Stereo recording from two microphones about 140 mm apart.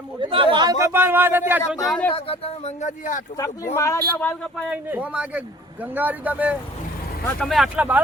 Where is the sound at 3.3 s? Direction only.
20° left (ahead or behind).